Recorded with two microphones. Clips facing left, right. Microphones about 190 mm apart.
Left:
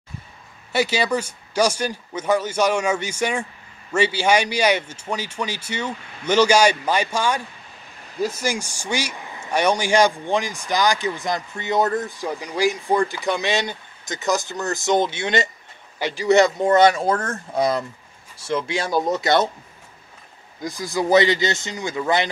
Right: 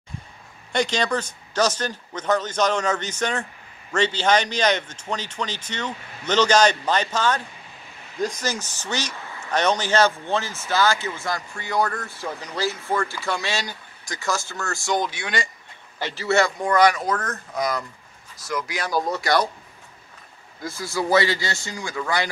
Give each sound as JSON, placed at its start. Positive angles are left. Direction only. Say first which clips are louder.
{"t": 0.7, "sound": "speech", "louder": "left 2 dB", "side_deg": 10}
{"t": 16.0, "sound": "speech", "louder": "left 5 dB", "side_deg": 15}
{"t": 20.6, "sound": "speech", "louder": "left 3 dB", "side_deg": 15}